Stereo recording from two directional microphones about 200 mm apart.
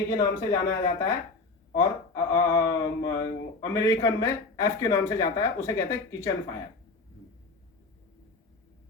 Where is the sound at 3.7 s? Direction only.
15° left (ahead or behind).